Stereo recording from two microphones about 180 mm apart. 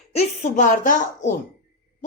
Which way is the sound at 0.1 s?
40° left (ahead or behind).